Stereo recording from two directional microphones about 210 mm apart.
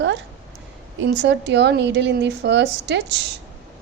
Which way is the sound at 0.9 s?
55° right (ahead or behind).